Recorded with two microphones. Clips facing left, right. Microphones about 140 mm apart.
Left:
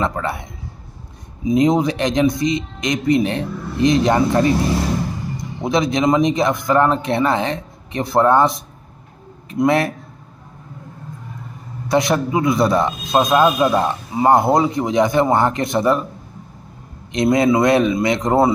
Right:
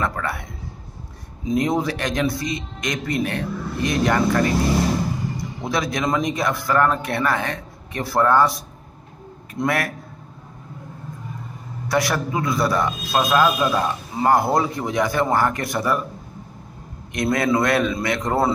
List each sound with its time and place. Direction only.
0.0 s a man's voice: 20° left (ahead or behind)
5.6 s a man's voice: 20° left (ahead or behind)
11.9 s a man's voice: 20° left (ahead or behind)
17.1 s a man's voice: 20° left (ahead or behind)